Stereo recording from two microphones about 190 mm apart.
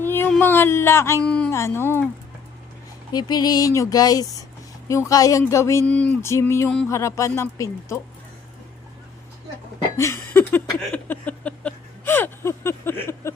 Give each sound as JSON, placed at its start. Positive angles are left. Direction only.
{"t": 0.0, "sound": "speech", "side_deg": 10}
{"t": 3.1, "sound": "speech", "side_deg": 20}
{"t": 10.0, "sound": "speech", "side_deg": 10}
{"t": 10.9, "sound": "a sound", "side_deg": 10}